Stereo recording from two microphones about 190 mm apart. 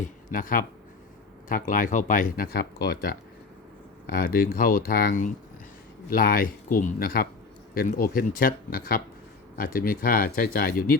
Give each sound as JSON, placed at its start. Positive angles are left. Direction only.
{"t": 0.0, "sound": "speech", "side_deg": 45}